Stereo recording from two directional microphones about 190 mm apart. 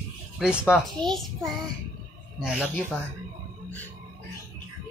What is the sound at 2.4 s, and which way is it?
Speech, 5° right (ahead or behind).